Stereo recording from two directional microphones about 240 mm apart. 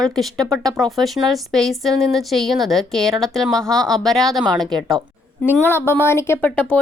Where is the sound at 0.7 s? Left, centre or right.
Centre.